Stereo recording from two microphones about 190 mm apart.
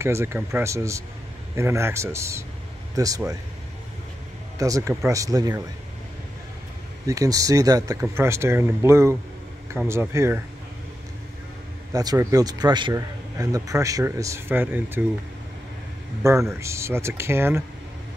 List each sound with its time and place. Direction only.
0.0 s speech: 15° right (ahead or behind)
4.6 s speech: 15° right (ahead or behind)
7.1 s speech: 15° right (ahead or behind)
11.9 s speech: 20° right (ahead or behind)
16.2 s speech: 15° right (ahead or behind)